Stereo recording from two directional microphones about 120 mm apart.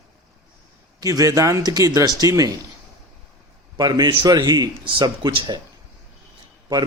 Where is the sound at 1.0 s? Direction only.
30° right (ahead or behind).